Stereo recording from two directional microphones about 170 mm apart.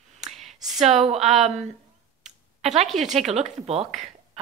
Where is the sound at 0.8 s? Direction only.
40° right (ahead or behind).